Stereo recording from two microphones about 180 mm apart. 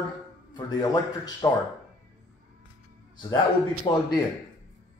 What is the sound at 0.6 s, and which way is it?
Speech, 25° left (ahead or behind).